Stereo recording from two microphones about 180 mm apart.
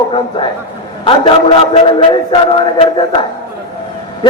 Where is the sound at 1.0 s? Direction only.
30° left (ahead or behind).